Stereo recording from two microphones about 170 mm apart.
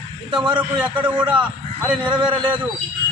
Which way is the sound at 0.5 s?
25° right (ahead or behind).